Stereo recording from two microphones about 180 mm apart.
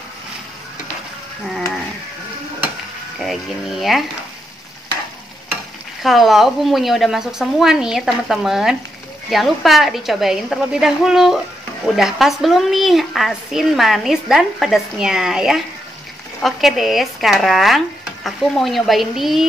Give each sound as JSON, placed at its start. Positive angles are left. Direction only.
{"t": 3.2, "sound": "speech", "side_deg": 0}
{"t": 6.0, "sound": "speech", "side_deg": 0}